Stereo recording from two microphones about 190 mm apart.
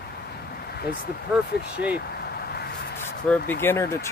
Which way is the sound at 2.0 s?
55° left (ahead or behind).